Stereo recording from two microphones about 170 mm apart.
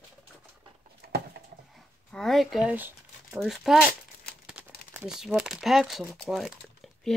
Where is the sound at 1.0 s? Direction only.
65° right (ahead or behind).